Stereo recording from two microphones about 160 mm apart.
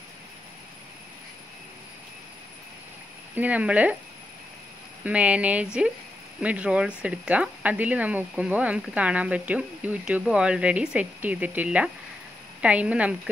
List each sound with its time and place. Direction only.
3.3 s speech: 10° right (ahead or behind)
5.0 s speech: 10° right (ahead or behind)